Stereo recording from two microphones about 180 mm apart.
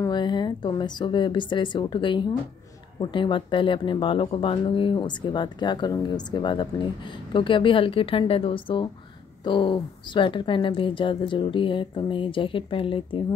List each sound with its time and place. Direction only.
0.0 s speech: 25° left (ahead or behind)